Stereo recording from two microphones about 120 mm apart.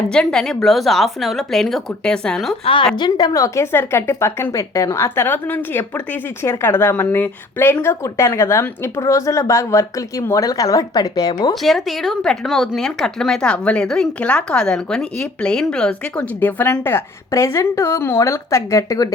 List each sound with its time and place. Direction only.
0.1 s speech: 5° left (ahead or behind)
2.9 s a woman's voice: 35° left (ahead or behind)
11.6 s speech: centre (ahead or behind); by 19.0 s 25° left (ahead or behind)